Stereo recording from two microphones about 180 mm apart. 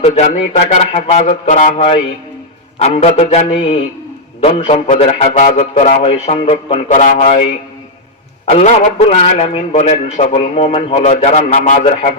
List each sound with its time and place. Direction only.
0.0 s a man's voice: 40° left (ahead or behind)
8.4 s a man's voice: 35° left (ahead or behind)